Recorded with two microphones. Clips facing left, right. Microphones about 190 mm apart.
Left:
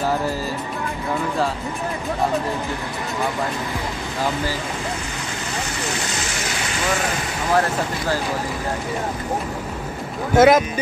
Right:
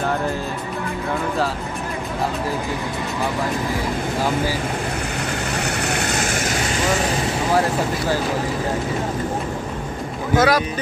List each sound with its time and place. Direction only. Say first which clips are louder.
5.8 s vehicle: right 4 dB; 60° right (ahead or behind)
10.3 s speech: left 4 dB; 25° left (ahead or behind)